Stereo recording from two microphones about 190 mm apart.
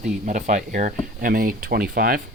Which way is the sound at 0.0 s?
40° right (ahead or behind).